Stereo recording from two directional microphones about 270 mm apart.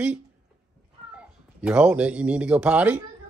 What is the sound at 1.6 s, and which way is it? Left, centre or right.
Speech, centre.